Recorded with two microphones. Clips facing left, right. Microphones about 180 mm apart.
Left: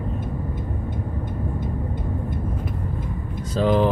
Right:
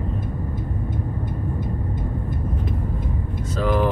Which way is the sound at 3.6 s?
25° left (ahead or behind).